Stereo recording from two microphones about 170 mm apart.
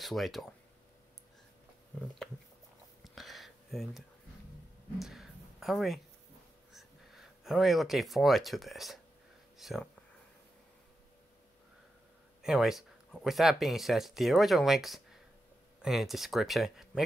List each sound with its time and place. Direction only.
0.0 s speech: centre (ahead or behind)
3.0 s a sound: centre (ahead or behind)
6.7 s speech: centre (ahead or behind)
12.4 s speech: 5° right (ahead or behind)